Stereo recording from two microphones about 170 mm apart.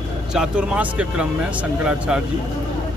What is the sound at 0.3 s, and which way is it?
Speech, 5° right (ahead or behind).